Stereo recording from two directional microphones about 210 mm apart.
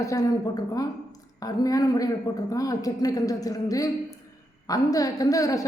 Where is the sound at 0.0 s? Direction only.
15° left (ahead or behind).